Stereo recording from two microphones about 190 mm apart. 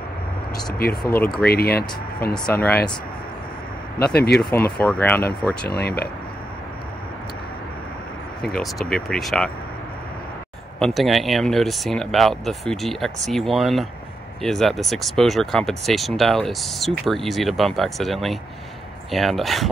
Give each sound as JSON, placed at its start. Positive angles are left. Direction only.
{"t": 1.0, "sound": "speech", "side_deg": 10}
{"t": 1.4, "sound": "speech", "side_deg": 55}
{"t": 2.3, "sound": "speech", "side_deg": 5}
{"t": 4.1, "sound": "speech", "side_deg": 55}
{"t": 4.4, "sound": "speech", "side_deg": 10}
{"t": 5.7, "sound": "speech", "side_deg": 55}
{"t": 8.5, "sound": "speech", "side_deg": 5}
{"t": 10.8, "sound": "speech", "side_deg": 0}